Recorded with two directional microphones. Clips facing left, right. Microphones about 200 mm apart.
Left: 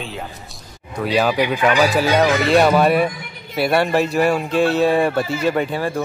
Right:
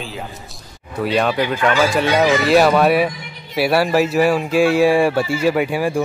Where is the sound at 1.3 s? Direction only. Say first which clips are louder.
Left 1 dB; 15° left (ahead or behind).